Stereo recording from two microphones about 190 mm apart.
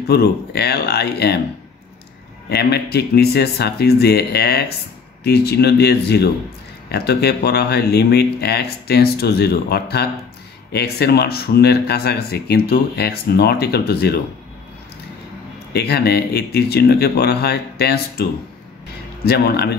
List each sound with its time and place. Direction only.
0.1 s speech: 60° left (ahead or behind)
2.5 s speech: 60° left (ahead or behind)
15.7 s speech: 55° left (ahead or behind)
19.2 s speech: 55° left (ahead or behind)